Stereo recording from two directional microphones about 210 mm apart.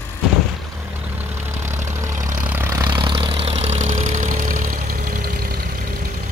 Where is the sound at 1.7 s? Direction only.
15° right (ahead or behind); by 5.6 s 45° right (ahead or behind).